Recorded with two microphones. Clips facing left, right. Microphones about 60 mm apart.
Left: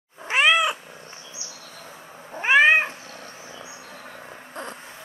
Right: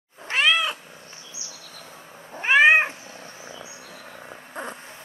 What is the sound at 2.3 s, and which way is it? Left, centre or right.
Cat, centre.